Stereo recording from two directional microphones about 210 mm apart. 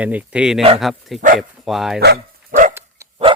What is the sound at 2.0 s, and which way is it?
Dog, 50° right (ahead or behind).